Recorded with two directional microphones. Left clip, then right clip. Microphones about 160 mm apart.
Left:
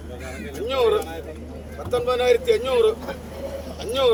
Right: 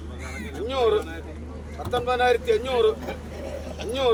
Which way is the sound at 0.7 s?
10° right (ahead or behind).